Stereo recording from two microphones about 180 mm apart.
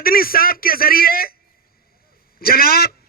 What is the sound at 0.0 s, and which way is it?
Speech, 55° left (ahead or behind).